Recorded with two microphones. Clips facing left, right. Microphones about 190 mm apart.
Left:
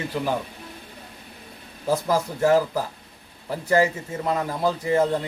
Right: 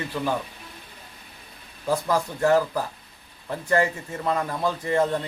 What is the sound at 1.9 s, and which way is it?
Speech, 5° left (ahead or behind).